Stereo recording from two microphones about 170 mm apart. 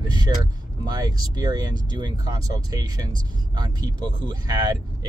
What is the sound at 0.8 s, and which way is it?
Speech, 25° right (ahead or behind).